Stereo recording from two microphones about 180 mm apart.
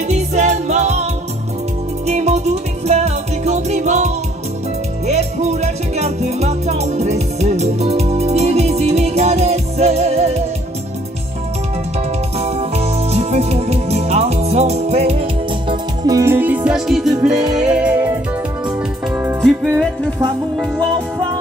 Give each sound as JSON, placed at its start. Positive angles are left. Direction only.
{"t": 0.1, "sound": "music", "side_deg": -40}
{"t": 2.0, "sound": "music", "side_deg": -40}
{"t": 12.4, "sound": "music", "side_deg": -35}
{"t": 15.7, "sound": "music", "side_deg": -20}